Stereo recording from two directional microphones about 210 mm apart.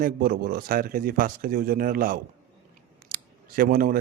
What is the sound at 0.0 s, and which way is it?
Speech, 45° right (ahead or behind).